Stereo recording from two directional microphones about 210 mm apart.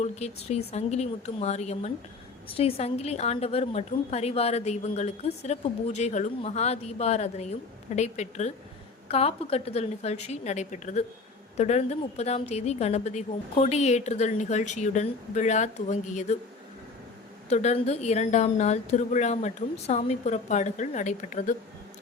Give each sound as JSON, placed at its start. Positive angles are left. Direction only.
{"t": 0.0, "sound": "a woman's voice", "side_deg": 30}
{"t": 17.5, "sound": "a woman's voice", "side_deg": 30}